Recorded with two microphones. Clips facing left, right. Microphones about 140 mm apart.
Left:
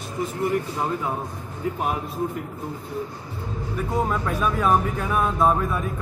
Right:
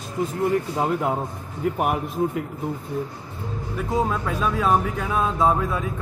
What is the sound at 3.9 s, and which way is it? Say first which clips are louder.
Speech: right 1 dB; centre (ahead or behind).